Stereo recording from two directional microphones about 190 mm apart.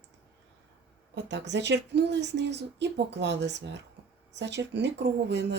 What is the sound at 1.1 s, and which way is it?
A woman's voice, 65° right (ahead or behind).